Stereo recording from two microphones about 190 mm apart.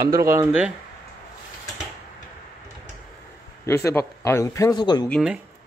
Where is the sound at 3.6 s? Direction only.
15° left (ahead or behind).